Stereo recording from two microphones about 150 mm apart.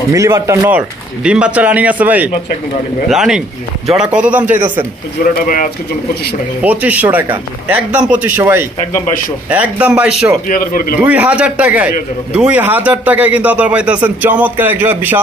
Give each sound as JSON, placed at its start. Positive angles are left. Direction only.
{"t": 0.1, "sound": "a man's voice", "side_deg": -20}
{"t": 6.6, "sound": "a man's voice", "side_deg": -10}
{"t": 10.5, "sound": "a man's voice", "side_deg": 70}
{"t": 11.0, "sound": "a man's voice", "side_deg": -10}